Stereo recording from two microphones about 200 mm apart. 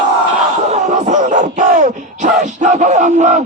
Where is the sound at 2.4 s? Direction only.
40° right (ahead or behind).